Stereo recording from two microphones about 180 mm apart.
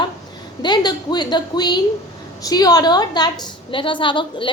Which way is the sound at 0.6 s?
25° left (ahead or behind).